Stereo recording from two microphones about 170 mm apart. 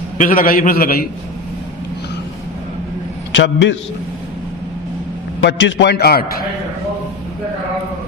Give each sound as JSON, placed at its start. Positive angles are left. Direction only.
{"t": 0.2, "sound": "a man's voice", "side_deg": 55}
{"t": 3.3, "sound": "a man's voice", "side_deg": 90}
{"t": 5.4, "sound": "a man's voice", "side_deg": 90}